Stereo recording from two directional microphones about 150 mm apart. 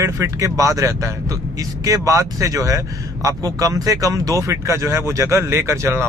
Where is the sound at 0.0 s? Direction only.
20° right (ahead or behind).